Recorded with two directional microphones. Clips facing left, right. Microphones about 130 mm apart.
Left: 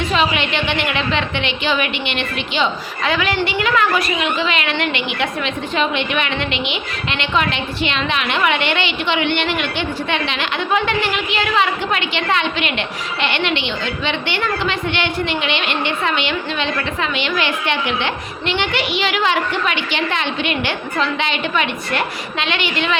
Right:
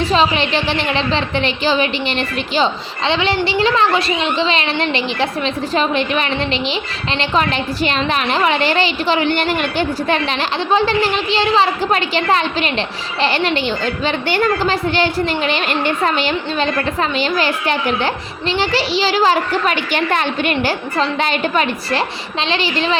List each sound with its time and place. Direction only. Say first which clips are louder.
0.0 s a woman's voice: right 3 dB; 35° right (ahead or behind)